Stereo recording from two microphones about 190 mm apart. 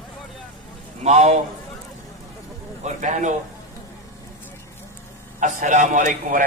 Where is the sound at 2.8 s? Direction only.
40° right (ahead or behind).